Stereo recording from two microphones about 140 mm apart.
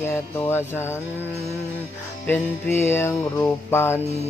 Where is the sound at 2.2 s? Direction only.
15° left (ahead or behind).